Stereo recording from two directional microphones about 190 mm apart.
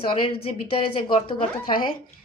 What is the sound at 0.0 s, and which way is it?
A woman's voice, 25° left (ahead or behind).